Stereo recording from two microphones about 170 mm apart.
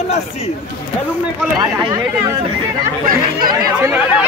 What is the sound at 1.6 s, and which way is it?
Speech, 25° right (ahead or behind).